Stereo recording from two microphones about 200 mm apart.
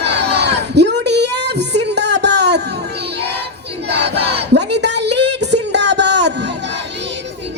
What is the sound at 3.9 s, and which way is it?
Battle cry, 55° right (ahead or behind).